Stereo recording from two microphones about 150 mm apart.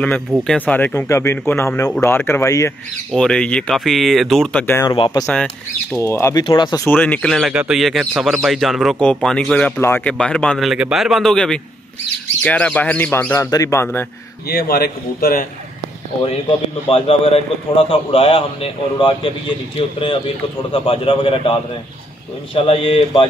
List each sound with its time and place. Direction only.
0.0 s speech: 5° left (ahead or behind)
3.1 s a man's voice: 5° left (ahead or behind)
4.8 s a man's voice: 30° left (ahead or behind)
5.2 s a man's voice: 5° left (ahead or behind)
5.9 s speech: 15° left (ahead or behind)
6.4 s a man's voice: 30° left (ahead or behind)
6.9 s a man's voice: 10° left (ahead or behind)
14.5 s a man's voice: 90° left
16.9 s a man's voice: 40° left (ahead or behind)
20.7 s a man's voice: 40° left (ahead or behind)